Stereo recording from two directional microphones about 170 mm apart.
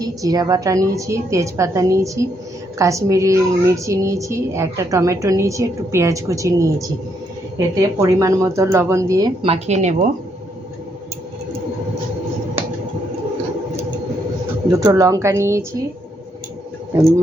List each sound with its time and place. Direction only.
0.0 s a woman's voice: 20° right (ahead or behind)
7.8 s speech: 20° right (ahead or behind)
9.4 s a woman's voice: 40° right (ahead or behind)
14.7 s speech: 20° right (ahead or behind)